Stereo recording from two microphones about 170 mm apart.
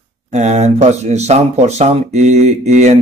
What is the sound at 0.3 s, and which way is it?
Speech, 40° right (ahead or behind).